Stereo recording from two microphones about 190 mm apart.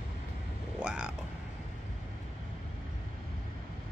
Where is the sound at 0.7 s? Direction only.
5° right (ahead or behind).